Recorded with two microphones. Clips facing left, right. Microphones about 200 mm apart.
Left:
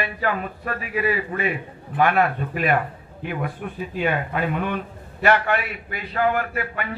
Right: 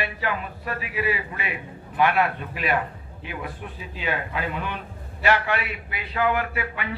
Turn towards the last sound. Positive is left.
turn(degrees=45)  # may be behind; listen again after turning